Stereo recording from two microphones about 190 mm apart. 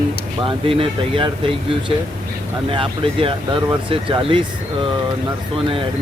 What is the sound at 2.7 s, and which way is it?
Speech, 30° right (ahead or behind).